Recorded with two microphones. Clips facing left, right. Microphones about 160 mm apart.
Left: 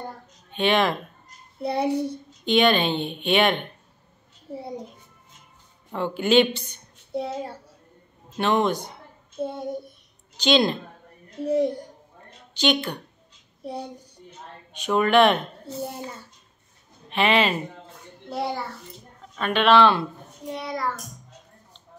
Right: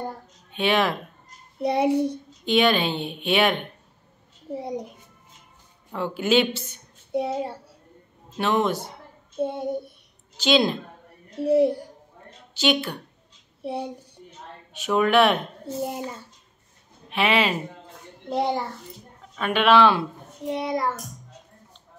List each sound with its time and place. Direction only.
0.5 s speech: 5° right (ahead or behind)
4.6 s speech: 15° right (ahead or behind)
5.9 s a woman's voice: 5° right (ahead or behind)
13.6 s a sound: 10° right (ahead or behind)
14.7 s speech: 5° right (ahead or behind)
18.3 s a child's voice: 20° right (ahead or behind)
19.3 s speech: 10° right (ahead or behind)
20.4 s a child's voice: 20° right (ahead or behind)